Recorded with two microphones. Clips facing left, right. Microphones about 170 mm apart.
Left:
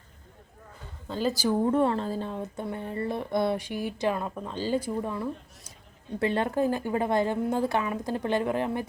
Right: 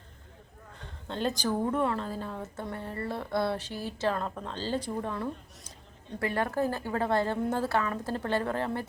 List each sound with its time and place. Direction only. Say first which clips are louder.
0.8 s a man's voice: left 2 dB; 5° left (ahead or behind)
1.6 s a woman's voice: left 6 dB; 30° left (ahead or behind); by 5.7 s 5° left (ahead or behind)
6.1 s a woman's voice: left 3 dB; 25° left (ahead or behind)